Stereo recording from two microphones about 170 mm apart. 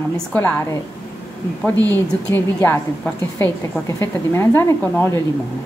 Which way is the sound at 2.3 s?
10° left (ahead or behind).